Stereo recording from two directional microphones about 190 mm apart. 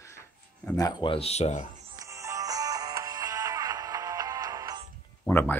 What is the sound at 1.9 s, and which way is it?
Music, 15° right (ahead or behind).